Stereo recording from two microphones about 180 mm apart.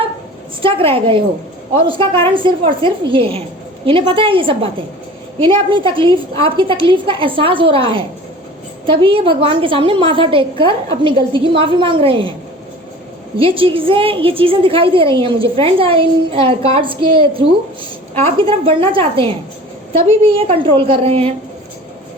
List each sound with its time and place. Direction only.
0.6 s a woman's voice: 30° right (ahead or behind)
13.3 s a woman's voice: 30° right (ahead or behind)